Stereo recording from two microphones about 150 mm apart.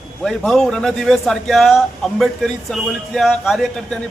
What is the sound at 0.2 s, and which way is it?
A man's voice, centre (ahead or behind).